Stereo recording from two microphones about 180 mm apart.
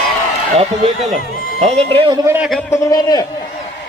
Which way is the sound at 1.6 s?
35° right (ahead or behind).